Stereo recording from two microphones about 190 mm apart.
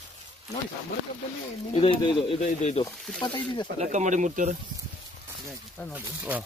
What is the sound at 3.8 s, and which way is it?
Speech, 40° right (ahead or behind).